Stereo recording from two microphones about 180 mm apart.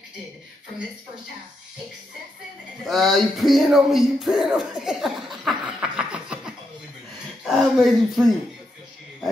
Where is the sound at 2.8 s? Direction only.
Centre (ahead or behind).